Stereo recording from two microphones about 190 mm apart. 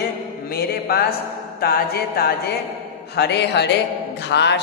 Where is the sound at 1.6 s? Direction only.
55° left (ahead or behind).